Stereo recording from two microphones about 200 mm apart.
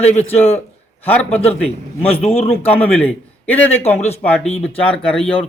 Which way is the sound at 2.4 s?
10° left (ahead or behind).